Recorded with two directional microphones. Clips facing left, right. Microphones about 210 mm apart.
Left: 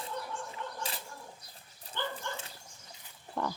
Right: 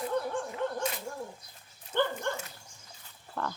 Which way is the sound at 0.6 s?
55° right (ahead or behind).